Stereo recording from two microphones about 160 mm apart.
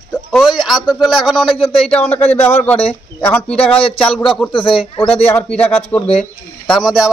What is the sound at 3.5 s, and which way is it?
Speech, 35° left (ahead or behind).